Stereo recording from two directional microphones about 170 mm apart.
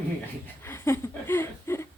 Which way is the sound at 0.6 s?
15° left (ahead or behind).